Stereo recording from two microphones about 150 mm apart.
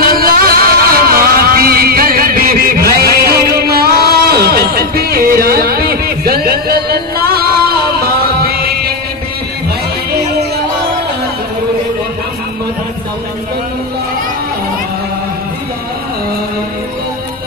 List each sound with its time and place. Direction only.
0.0 s music: 75° right (ahead or behind)